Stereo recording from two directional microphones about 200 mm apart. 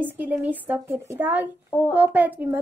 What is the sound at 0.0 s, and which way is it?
Speech, 10° right (ahead or behind).